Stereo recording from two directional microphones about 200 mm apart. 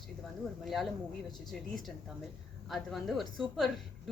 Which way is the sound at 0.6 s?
Centre (ahead or behind).